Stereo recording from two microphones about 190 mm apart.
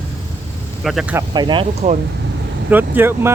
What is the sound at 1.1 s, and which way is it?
Speech, 20° right (ahead or behind).